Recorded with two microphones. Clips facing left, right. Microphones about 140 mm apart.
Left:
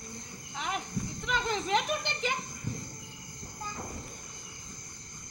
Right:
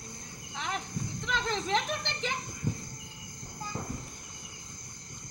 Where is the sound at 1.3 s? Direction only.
10° left (ahead or behind).